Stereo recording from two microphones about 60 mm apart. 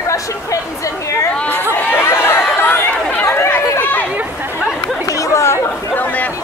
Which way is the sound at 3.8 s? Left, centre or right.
Left.